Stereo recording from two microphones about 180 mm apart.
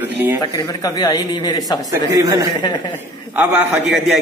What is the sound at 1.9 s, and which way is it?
Speech, 20° right (ahead or behind).